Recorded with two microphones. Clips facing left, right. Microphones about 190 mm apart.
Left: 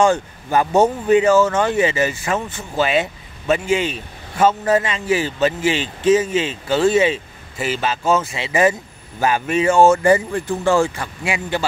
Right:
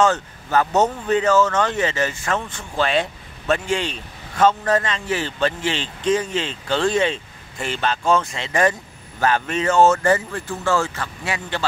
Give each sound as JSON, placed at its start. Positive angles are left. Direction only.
{"t": 0.0, "sound": "speech", "side_deg": 15}